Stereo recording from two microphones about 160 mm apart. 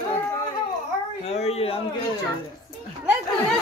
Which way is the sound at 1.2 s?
40° left (ahead or behind).